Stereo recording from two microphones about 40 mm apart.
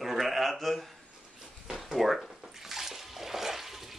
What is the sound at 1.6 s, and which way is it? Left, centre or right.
Bathtub, centre.